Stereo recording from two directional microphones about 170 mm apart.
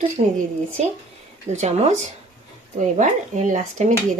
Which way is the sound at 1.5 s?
45° right (ahead or behind).